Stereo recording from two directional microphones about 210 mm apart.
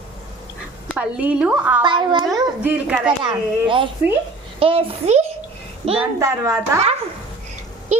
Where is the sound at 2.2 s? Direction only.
5° right (ahead or behind).